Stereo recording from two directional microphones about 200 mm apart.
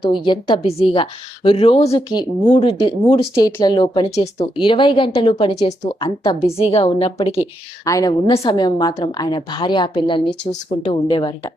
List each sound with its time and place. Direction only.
0.0 s a woman's voice: 25° left (ahead or behind)
7.9 s a woman's voice: 15° left (ahead or behind)